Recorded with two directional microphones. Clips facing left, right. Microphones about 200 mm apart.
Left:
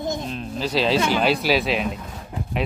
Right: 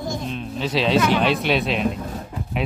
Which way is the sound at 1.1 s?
Centre (ahead or behind).